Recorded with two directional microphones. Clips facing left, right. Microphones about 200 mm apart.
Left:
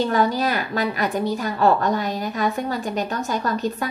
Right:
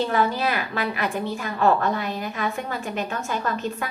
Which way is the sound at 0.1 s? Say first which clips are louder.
Left 2 dB; 40° left (ahead or behind).